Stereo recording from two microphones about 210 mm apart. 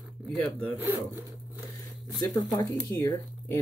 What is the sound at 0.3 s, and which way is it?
Speech, 5° left (ahead or behind).